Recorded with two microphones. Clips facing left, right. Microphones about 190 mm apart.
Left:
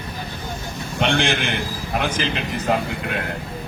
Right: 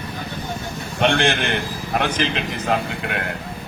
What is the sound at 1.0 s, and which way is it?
A man's voice, 55° right (ahead or behind).